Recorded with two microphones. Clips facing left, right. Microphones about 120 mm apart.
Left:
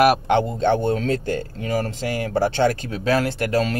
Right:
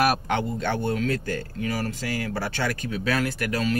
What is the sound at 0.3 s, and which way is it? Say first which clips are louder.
Speech: left 7 dB; 25° left (ahead or behind).